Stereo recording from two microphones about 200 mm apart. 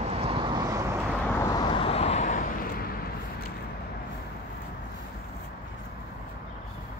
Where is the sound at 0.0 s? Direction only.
30° right (ahead or behind).